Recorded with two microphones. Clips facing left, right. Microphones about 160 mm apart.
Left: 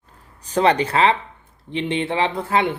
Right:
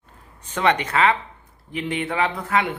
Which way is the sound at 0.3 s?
35° left (ahead or behind).